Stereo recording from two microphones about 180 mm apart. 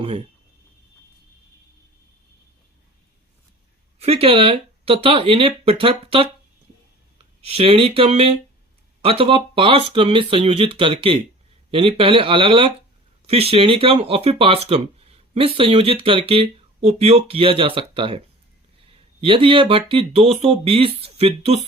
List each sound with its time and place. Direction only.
3.9 s speech: 35° right (ahead or behind)
7.4 s speech: 35° right (ahead or behind)
19.2 s speech: 30° right (ahead or behind)